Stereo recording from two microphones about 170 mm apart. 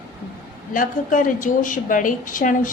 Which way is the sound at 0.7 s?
50° left (ahead or behind).